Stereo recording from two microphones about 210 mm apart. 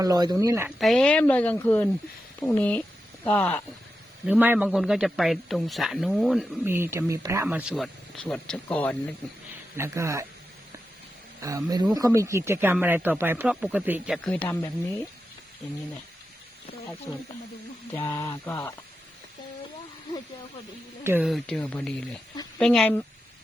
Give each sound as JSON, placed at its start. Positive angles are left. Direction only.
{"t": 0.0, "sound": "speech", "side_deg": -20}
{"t": 0.8, "sound": "speech", "side_deg": 0}
{"t": 4.3, "sound": "a man's voice", "side_deg": -10}
{"t": 9.7, "sound": "speech", "side_deg": -10}
{"t": 11.3, "sound": "speech", "side_deg": -15}
{"t": 14.3, "sound": "speech", "side_deg": 5}
{"t": 17.1, "sound": "speech", "side_deg": 15}
{"t": 21.0, "sound": "speech", "side_deg": -10}
{"t": 21.2, "sound": "a man's voice", "side_deg": 0}